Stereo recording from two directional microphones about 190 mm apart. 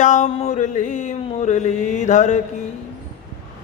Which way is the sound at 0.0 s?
40° left (ahead or behind).